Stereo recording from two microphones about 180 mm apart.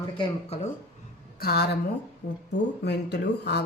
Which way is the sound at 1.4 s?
60° left (ahead or behind).